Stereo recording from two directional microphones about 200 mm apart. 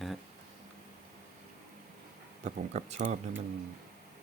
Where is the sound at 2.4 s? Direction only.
35° right (ahead or behind).